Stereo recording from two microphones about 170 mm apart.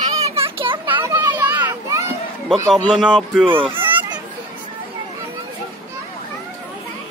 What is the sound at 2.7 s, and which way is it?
Speech, 5° right (ahead or behind).